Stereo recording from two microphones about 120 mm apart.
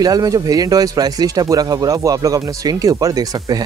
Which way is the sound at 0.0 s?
30° right (ahead or behind).